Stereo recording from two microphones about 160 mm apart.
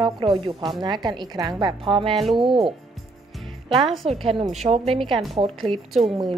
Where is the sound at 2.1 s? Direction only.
Centre (ahead or behind).